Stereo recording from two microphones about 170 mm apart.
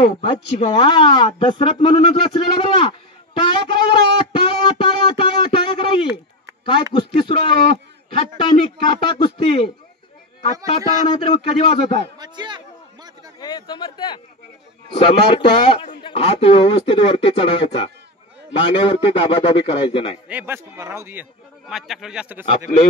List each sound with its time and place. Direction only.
0.0 s a man's voice: 30° left (ahead or behind)
11.1 s speech: 30° left (ahead or behind)
12.2 s a sound: 25° right (ahead or behind)
13.4 s speech: 25° left (ahead or behind)
20.2 s a man's voice: 10° right (ahead or behind)